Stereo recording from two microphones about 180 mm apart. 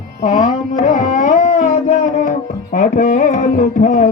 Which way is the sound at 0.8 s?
45° left (ahead or behind).